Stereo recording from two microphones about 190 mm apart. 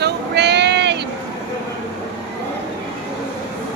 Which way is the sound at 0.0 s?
60° right (ahead or behind).